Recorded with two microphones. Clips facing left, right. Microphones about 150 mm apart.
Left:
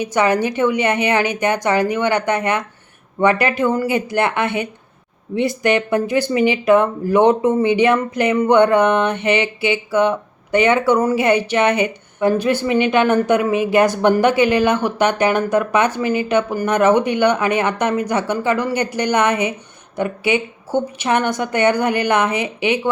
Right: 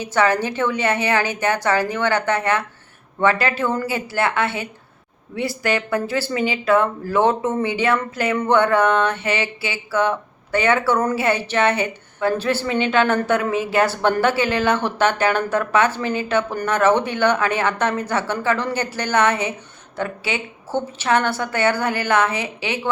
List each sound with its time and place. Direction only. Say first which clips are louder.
0.0 s speech: left 2 dB; 15° left (ahead or behind)